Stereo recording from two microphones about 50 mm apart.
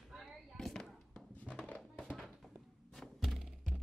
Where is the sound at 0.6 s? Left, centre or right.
Centre.